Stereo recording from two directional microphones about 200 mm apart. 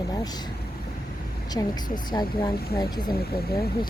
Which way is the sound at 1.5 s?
20° left (ahead or behind).